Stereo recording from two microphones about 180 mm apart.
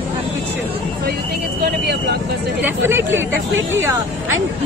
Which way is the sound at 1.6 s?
60° right (ahead or behind).